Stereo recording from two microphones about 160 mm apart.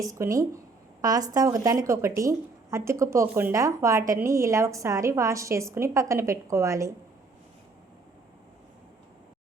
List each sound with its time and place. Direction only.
0.1 s a woman's voice: 20° right (ahead or behind)